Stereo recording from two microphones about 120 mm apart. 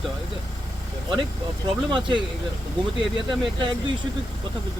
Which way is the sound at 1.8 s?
40° right (ahead or behind).